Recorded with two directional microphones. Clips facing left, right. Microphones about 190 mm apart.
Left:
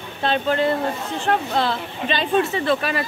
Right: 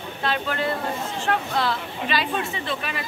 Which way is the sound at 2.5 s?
40° left (ahead or behind).